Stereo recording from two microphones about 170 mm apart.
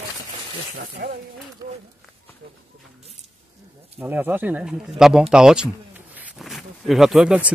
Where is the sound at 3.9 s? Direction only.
10° right (ahead or behind).